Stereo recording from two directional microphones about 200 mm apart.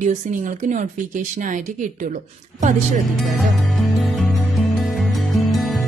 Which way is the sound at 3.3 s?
Centre (ahead or behind).